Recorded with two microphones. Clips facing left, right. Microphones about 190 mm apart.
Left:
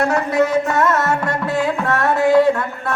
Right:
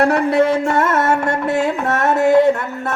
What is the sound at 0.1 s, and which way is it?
Music, 30° right (ahead or behind).